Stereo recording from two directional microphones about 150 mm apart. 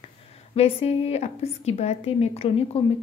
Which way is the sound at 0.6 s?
40° left (ahead or behind).